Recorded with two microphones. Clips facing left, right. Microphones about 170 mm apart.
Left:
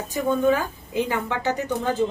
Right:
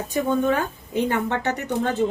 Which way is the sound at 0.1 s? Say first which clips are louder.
Left 1 dB; 70° right (ahead or behind).